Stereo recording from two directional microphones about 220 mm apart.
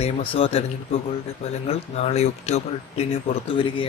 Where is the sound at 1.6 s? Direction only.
30° left (ahead or behind).